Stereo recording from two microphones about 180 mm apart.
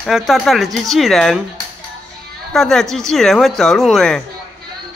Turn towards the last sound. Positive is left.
turn(degrees=5)  # may be behind; listen again after turning